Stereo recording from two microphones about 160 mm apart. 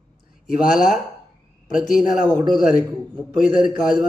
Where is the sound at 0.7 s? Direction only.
5° right (ahead or behind).